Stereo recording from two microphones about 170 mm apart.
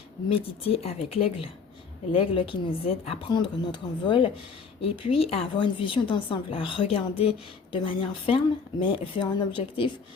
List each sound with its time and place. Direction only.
0.3 s a woman's voice: 35° left (ahead or behind)